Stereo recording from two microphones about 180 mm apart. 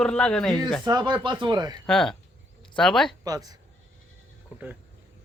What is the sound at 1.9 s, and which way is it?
Speech, 5° left (ahead or behind).